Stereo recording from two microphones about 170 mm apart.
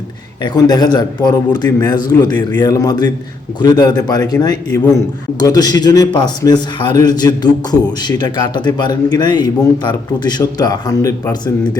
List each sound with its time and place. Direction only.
0.4 s a man's voice: 25° left (ahead or behind)